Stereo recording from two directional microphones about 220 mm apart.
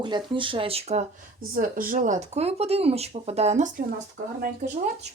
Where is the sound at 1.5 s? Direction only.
40° right (ahead or behind).